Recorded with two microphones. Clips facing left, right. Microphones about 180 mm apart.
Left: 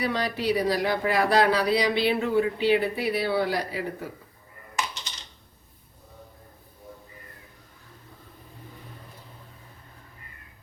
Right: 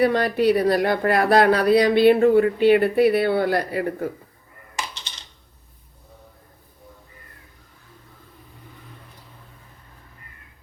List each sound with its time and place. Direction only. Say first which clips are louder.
0.0 s speech: right 9 dB; 55° right (ahead or behind)